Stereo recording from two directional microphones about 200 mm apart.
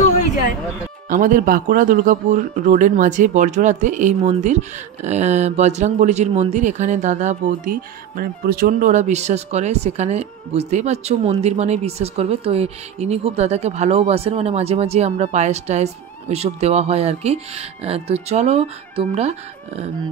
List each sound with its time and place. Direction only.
1.0 s speech: 40° right (ahead or behind)